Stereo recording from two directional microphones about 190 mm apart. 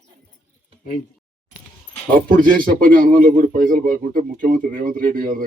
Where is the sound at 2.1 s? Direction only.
45° right (ahead or behind).